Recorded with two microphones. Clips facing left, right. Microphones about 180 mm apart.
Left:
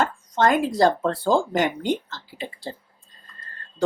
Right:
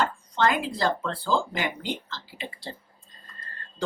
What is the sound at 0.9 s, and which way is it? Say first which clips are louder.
Speech: left 6 dB; 45° left (ahead or behind).